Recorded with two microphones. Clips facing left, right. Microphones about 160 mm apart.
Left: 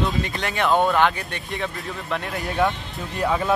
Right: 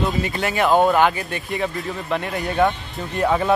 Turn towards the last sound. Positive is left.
turn(degrees=0)  # may be behind; listen again after turning